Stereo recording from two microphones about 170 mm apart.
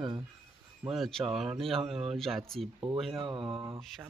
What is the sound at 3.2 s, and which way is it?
Speech, 30° right (ahead or behind).